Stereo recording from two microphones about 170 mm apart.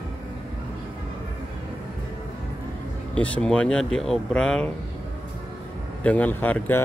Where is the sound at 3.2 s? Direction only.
5° left (ahead or behind).